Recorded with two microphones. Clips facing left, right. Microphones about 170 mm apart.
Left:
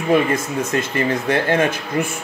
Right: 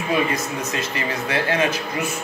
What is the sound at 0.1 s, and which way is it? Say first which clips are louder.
Speech: left 5 dB; 55° left (ahead or behind).